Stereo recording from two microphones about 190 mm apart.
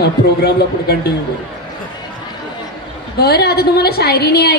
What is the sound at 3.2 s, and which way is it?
A woman's voice, 60° left (ahead or behind).